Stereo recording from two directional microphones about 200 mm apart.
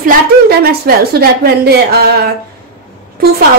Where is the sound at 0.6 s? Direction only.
50° right (ahead or behind).